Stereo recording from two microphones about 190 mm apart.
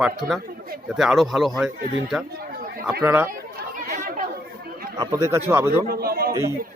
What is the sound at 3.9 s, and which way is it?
Chatter, 50° right (ahead or behind).